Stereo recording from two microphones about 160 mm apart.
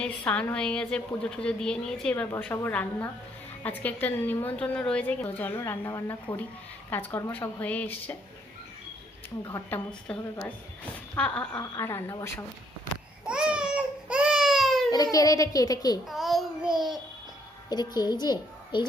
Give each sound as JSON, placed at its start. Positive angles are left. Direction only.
{"t": 0.0, "sound": "a woman's voice", "side_deg": 10}
{"t": 9.5, "sound": "a woman's voice", "side_deg": 15}
{"t": 13.2, "sound": "baby cry", "side_deg": -5}
{"t": 14.8, "sound": "a child's voice", "side_deg": 25}
{"t": 16.0, "sound": "child singing", "side_deg": 0}
{"t": 17.7, "sound": "a child's voice", "side_deg": 25}